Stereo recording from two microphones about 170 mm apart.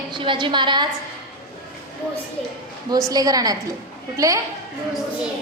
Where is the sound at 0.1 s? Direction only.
30° right (ahead or behind).